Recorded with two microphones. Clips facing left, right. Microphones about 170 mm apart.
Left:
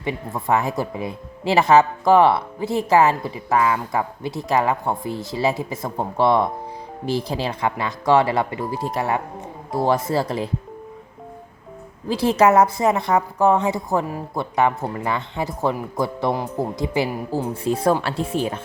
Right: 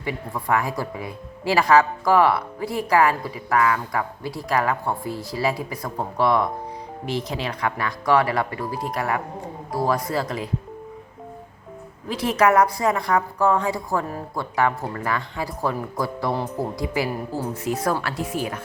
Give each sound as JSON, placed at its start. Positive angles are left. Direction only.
{"t": 0.0, "sound": "speech", "side_deg": 25}
{"t": 12.0, "sound": "speech", "side_deg": 30}